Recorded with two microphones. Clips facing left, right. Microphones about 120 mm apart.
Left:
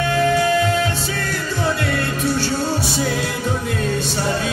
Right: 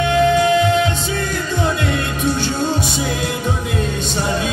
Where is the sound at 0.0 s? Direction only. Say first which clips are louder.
Right 3 dB; 20° right (ahead or behind).